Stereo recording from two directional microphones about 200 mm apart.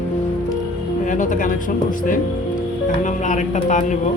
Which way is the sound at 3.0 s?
35° left (ahead or behind).